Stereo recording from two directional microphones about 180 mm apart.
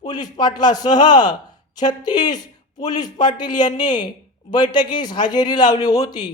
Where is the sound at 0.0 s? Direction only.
25° left (ahead or behind).